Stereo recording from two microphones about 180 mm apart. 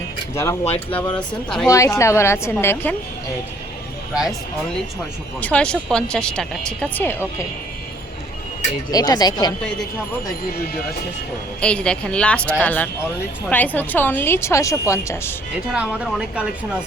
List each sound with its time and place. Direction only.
0.6 s speech: 35° left (ahead or behind)
1.3 s speech: 5° left (ahead or behind)
1.6 s speech: 20° left (ahead or behind)
4.1 s speech: 5° right (ahead or behind)
5.4 s speech: 5° left (ahead or behind)
8.9 s speech: 20° left (ahead or behind)
11.6 s speech: 5° left (ahead or behind)
15.7 s speech: 5° right (ahead or behind)